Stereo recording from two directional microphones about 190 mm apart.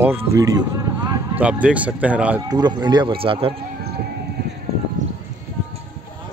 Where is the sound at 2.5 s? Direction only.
20° right (ahead or behind).